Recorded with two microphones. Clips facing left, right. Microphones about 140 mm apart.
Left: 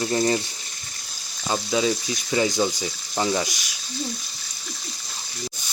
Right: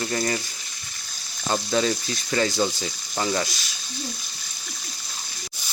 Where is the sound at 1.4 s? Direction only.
5° left (ahead or behind).